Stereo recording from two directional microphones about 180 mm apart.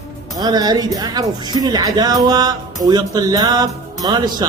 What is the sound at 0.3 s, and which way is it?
Speech, 20° right (ahead or behind).